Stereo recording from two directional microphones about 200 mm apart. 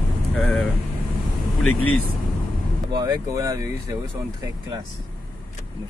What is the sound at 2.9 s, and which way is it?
Speech, 20° right (ahead or behind).